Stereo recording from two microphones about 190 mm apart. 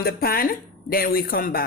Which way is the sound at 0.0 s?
50° left (ahead or behind).